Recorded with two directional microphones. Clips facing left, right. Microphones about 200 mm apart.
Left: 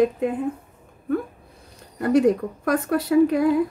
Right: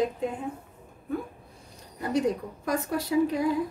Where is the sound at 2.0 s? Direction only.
60° left (ahead or behind).